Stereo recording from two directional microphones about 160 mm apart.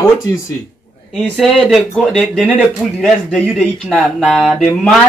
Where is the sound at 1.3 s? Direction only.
Centre (ahead or behind).